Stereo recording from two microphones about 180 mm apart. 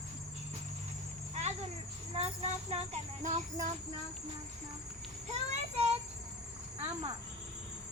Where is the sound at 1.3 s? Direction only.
40° right (ahead or behind).